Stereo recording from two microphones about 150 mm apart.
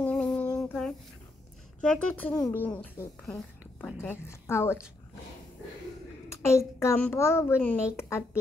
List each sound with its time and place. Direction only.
0.0 s a sound: 5° left (ahead or behind)
1.8 s a child's voice: 10° left (ahead or behind)
6.2 s a child's voice: 20° left (ahead or behind)